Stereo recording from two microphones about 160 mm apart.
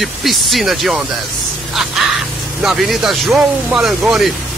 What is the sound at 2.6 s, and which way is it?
Speech, centre (ahead or behind).